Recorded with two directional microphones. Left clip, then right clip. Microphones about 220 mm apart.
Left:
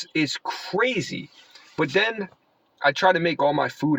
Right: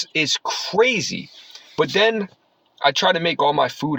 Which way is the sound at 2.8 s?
10° right (ahead or behind).